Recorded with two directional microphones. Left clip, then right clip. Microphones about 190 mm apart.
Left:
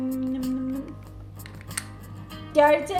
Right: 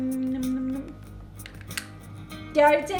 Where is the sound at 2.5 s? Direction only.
5° right (ahead or behind).